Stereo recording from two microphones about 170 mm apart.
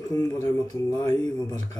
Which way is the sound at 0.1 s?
20° left (ahead or behind).